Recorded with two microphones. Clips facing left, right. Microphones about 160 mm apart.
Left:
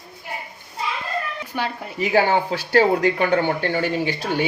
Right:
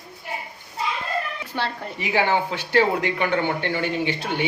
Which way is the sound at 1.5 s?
10° left (ahead or behind).